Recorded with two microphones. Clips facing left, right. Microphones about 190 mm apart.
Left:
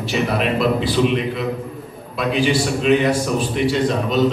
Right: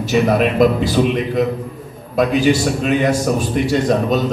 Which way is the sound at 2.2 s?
45° right (ahead or behind).